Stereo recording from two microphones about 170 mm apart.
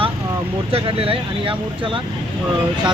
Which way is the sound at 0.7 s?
35° right (ahead or behind).